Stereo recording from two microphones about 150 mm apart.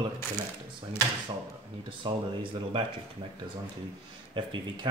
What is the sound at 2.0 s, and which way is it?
Speech, 35° right (ahead or behind).